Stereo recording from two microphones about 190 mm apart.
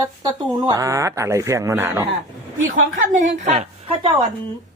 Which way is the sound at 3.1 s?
40° right (ahead or behind).